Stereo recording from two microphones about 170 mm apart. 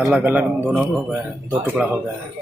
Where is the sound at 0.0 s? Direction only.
5° right (ahead or behind).